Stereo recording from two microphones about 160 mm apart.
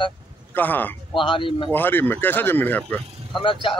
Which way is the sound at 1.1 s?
30° left (ahead or behind).